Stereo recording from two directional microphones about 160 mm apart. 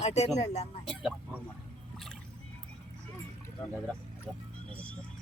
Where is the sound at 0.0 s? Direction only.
45° left (ahead or behind).